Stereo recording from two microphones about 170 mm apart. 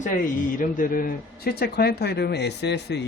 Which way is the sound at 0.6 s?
55° left (ahead or behind).